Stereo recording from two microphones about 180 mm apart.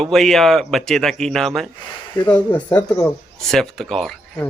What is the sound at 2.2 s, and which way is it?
Speech, 25° left (ahead or behind).